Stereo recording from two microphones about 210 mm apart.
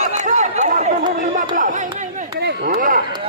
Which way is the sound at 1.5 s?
40° right (ahead or behind).